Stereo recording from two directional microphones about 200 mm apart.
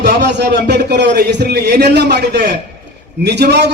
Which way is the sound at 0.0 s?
55° right (ahead or behind).